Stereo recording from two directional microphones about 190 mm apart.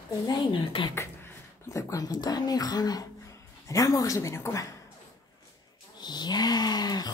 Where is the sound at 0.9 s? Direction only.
10° left (ahead or behind).